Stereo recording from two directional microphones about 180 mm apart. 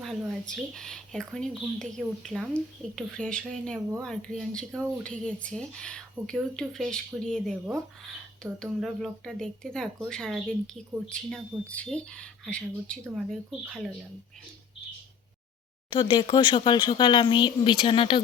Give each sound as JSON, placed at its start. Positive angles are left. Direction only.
{"t": 0.0, "sound": "speech", "side_deg": 0}
{"t": 8.5, "sound": "speech", "side_deg": 5}
{"t": 15.9, "sound": "speech", "side_deg": 30}